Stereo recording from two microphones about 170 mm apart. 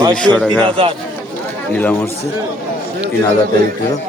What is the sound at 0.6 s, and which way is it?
Speech, 30° right (ahead or behind).